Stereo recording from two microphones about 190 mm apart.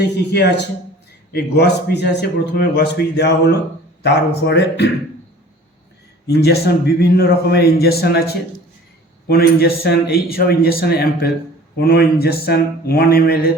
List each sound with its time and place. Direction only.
0.3 s a man's voice: 60° left (ahead or behind)
6.2 s a man's voice: 60° left (ahead or behind)